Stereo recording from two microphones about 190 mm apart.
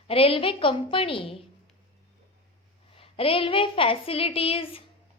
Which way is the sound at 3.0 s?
30° left (ahead or behind).